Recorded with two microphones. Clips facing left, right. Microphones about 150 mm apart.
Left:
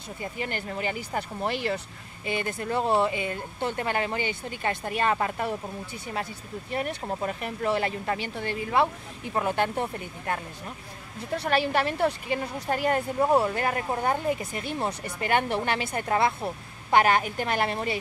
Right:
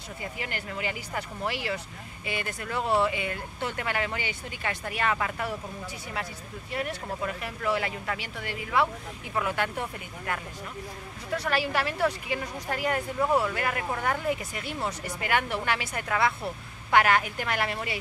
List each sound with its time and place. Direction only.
0.2 s speech: 35° left (ahead or behind)
6.7 s speech: 30° left (ahead or behind)